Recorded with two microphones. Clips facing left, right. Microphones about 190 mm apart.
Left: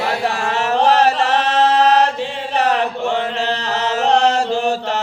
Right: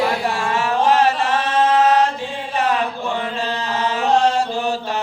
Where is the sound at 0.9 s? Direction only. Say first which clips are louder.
Left 2 dB; 40° left (ahead or behind).